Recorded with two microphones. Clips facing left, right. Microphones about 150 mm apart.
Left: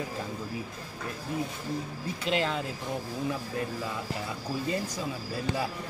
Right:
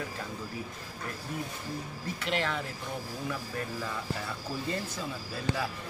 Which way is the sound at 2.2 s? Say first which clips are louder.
Left 3 dB; 25° left (ahead or behind).